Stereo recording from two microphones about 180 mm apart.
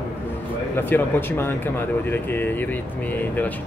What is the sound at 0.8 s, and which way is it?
Speech, 10° left (ahead or behind).